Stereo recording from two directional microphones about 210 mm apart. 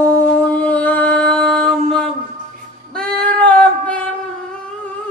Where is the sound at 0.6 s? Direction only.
5° left (ahead or behind).